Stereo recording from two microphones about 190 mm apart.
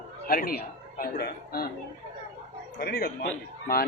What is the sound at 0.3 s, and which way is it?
Speech, 50° left (ahead or behind).